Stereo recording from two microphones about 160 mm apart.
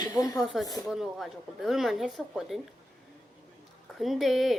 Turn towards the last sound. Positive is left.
turn(degrees=0)  # may be behind; listen again after turning